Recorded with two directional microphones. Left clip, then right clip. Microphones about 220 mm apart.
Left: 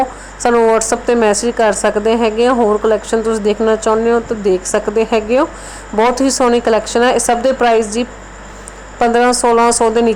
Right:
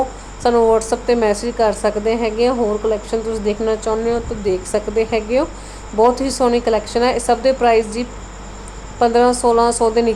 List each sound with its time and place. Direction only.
0.4 s a woman's voice: 20° left (ahead or behind)